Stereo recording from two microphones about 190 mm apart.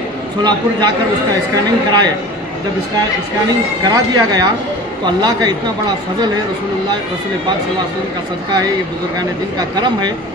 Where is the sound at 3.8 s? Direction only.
20° right (ahead or behind).